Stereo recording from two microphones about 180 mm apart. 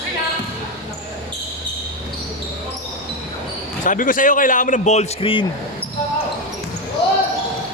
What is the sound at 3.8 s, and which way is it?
A man's voice, 50° left (ahead or behind).